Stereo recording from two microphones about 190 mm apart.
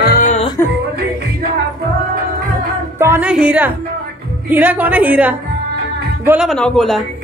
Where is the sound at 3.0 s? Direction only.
10° right (ahead or behind).